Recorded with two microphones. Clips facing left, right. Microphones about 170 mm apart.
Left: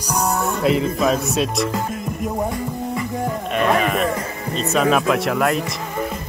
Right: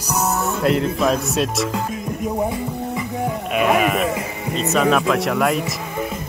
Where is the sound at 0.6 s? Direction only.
Centre (ahead or behind).